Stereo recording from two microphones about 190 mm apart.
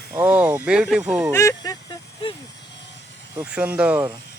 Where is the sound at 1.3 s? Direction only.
15° left (ahead or behind).